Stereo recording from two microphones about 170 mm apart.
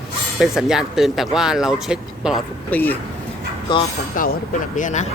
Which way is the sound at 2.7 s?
10° left (ahead or behind).